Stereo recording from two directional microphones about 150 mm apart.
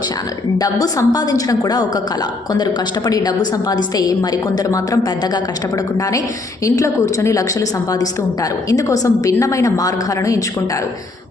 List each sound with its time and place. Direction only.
0.6 s a woman's voice: 25° left (ahead or behind)
3.1 s a woman's voice: 25° left (ahead or behind)
6.7 s a woman's voice: 20° left (ahead or behind)
8.7 s a woman's voice: 20° left (ahead or behind)